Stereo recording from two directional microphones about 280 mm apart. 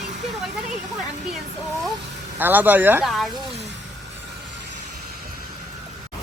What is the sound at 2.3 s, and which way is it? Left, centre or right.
Speech, centre.